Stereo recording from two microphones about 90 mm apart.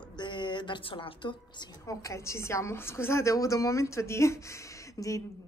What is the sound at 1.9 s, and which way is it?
Speech, 35° left (ahead or behind).